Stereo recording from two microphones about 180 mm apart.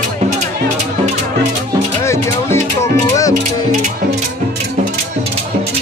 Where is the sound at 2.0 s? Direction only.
15° left (ahead or behind).